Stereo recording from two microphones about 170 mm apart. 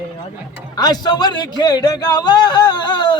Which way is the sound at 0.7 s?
25° left (ahead or behind).